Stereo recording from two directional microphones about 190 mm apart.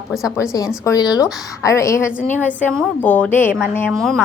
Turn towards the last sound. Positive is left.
turn(degrees=10)  # may be behind; listen again after turning